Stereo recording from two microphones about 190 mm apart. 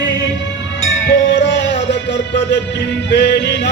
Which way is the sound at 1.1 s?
75° left (ahead or behind).